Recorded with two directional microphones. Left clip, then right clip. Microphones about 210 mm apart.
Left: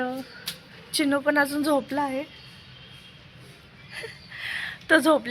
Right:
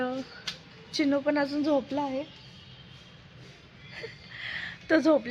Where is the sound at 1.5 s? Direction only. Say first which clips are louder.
Left 3 dB; 20° left (ahead or behind).